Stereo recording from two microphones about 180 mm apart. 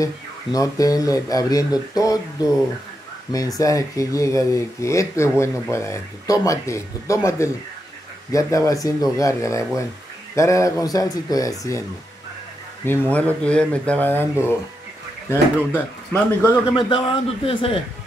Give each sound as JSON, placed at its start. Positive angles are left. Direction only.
{"t": 0.0, "sound": "speech", "side_deg": 20}
{"t": 12.8, "sound": "speech", "side_deg": 10}
{"t": 15.2, "sound": "speech", "side_deg": 10}
{"t": 16.7, "sound": "speech", "side_deg": 30}